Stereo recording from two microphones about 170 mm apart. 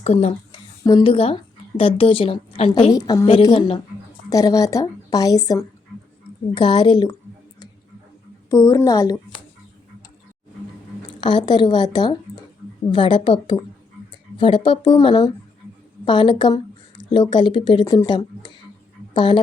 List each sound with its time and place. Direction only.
0.0 s a woman's voice: 40° left (ahead or behind)
0.9 s a woman's voice: 30° left (ahead or behind)
2.9 s speech: 20° left (ahead or behind)
3.5 s a woman's voice: 35° left (ahead or behind)
4.3 s speech: 20° left (ahead or behind)
8.4 s speech: 20° left (ahead or behind)
11.2 s a woman's voice: 25° left (ahead or behind)